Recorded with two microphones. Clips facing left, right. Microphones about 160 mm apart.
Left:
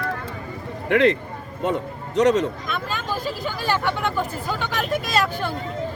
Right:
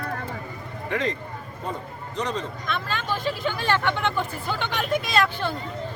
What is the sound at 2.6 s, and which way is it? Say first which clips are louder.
Speech: left 1 dB; 5° left (ahead or behind).